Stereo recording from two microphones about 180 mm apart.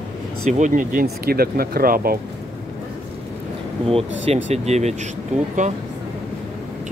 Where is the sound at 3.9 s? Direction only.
30° right (ahead or behind).